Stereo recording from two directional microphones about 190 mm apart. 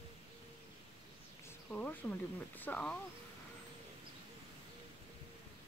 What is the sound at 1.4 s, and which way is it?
Speech, 10° left (ahead or behind).